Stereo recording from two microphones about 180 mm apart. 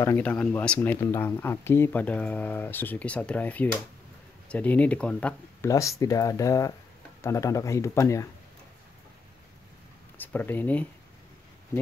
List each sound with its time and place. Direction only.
0.0 s speech: 10° left (ahead or behind)
5.7 s speech: 15° left (ahead or behind)
10.1 s speech: 10° left (ahead or behind)